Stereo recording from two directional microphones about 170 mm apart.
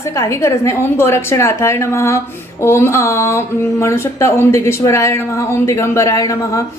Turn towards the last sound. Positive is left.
turn(degrees=20)  # may be behind; listen again after turning